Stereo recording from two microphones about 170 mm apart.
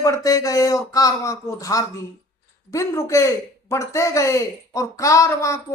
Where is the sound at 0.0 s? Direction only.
20° left (ahead or behind).